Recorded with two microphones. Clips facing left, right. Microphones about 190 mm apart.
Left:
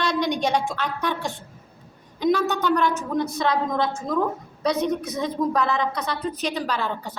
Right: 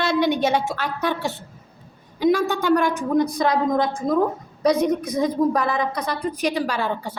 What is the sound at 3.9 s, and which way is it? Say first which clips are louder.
Speech: right 4 dB; 35° right (ahead or behind).